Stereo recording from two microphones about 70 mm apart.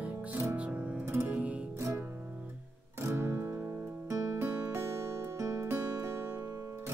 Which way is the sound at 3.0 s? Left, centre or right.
Right.